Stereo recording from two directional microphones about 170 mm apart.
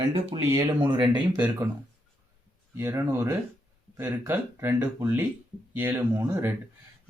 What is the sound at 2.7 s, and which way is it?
Speech, 15° right (ahead or behind).